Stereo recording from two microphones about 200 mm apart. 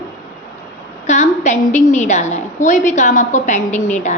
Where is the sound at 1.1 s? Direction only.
35° left (ahead or behind).